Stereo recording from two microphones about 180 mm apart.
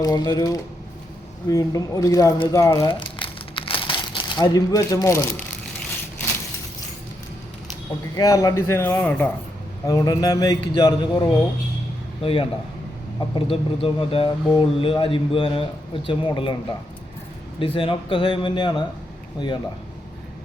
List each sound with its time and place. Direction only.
0.0 s speech: 20° left (ahead or behind)
8.1 s speech: 20° left (ahead or behind)
9.8 s speech: 20° left (ahead or behind)
17.6 s speech: 30° left (ahead or behind)